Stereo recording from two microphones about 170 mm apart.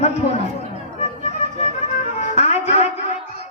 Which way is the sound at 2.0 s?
45° left (ahead or behind).